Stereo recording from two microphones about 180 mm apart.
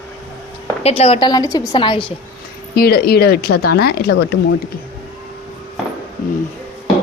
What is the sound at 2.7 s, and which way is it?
Speech, 60° left (ahead or behind).